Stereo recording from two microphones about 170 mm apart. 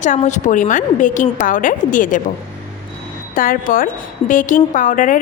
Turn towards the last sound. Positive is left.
turn(degrees=50)  # may be behind; listen again after turning